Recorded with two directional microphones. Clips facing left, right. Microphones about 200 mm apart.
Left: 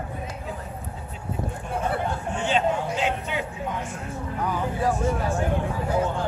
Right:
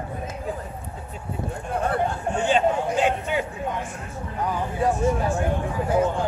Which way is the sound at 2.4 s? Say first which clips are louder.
Right 3 dB; 50° right (ahead or behind).